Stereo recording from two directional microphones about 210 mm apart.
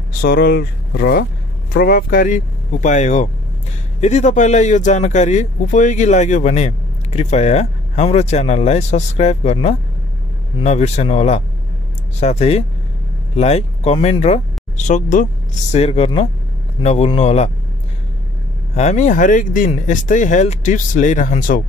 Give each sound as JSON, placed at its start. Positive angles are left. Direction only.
{"t": 0.2, "sound": "speech", "side_deg": 45}
{"t": 18.8, "sound": "speech", "side_deg": 35}